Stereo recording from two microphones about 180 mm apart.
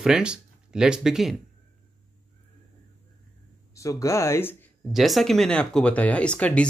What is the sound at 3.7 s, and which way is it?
Speech, 15° left (ahead or behind).